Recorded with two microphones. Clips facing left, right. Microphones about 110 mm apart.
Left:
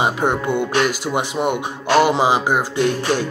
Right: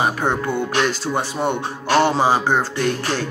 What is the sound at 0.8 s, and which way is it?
Music, 15° left (ahead or behind).